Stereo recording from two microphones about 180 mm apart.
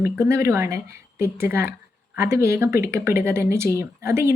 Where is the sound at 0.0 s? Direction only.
15° right (ahead or behind).